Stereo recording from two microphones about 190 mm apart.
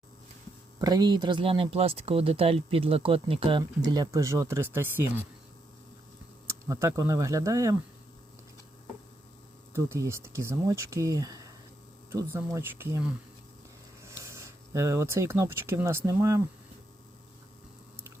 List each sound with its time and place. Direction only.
0.8 s speech: 20° right (ahead or behind)
6.5 s speech: 15° right (ahead or behind)
9.7 s speech: 15° right (ahead or behind)